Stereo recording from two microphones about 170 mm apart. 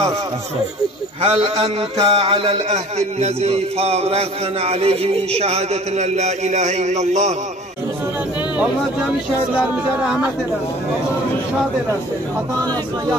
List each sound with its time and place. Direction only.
1.2 s a man's voice: 35° right (ahead or behind)
9.6 s speech: 5° right (ahead or behind)